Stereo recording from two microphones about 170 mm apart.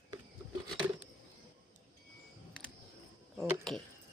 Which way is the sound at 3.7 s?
Centre (ahead or behind).